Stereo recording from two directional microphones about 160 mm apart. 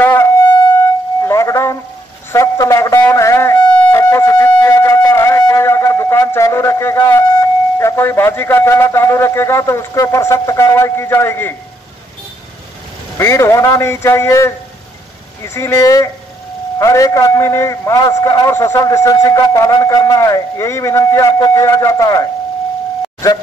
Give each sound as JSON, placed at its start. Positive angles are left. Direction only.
{"t": 0.0, "sound": "wind instrument", "side_deg": 10}
{"t": 1.2, "sound": "music", "side_deg": 20}
{"t": 2.3, "sound": "a sound", "side_deg": 20}
{"t": 13.2, "sound": "a man's voice", "side_deg": 15}